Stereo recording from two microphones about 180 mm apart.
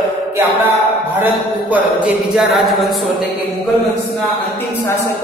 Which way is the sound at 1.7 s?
5° right (ahead or behind).